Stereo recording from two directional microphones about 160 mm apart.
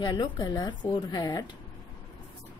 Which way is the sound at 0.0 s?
25° left (ahead or behind).